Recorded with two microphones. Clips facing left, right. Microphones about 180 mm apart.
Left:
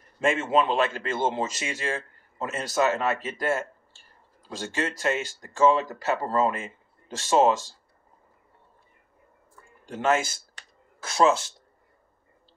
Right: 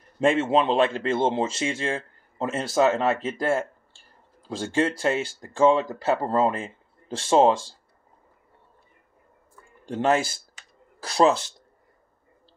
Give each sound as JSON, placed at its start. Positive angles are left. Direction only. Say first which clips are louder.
{"t": 0.2, "sound": "speech", "louder": "right 3 dB", "side_deg": -30}
{"t": 9.8, "sound": "speech", "louder": "right 2 dB", "side_deg": -35}